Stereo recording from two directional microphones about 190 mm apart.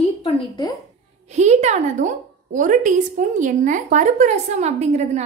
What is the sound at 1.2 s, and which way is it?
A woman's voice, 35° right (ahead or behind).